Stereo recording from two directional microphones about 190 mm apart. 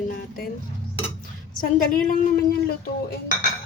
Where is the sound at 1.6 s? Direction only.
50° left (ahead or behind).